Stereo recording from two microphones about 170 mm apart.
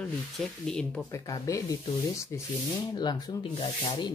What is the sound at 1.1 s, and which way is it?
Speech, 20° left (ahead or behind).